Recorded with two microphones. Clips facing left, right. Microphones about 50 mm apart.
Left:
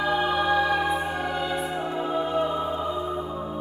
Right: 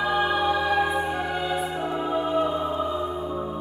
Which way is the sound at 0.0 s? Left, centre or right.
Centre.